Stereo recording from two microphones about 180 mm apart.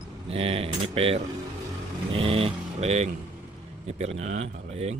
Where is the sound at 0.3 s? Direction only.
35° right (ahead or behind).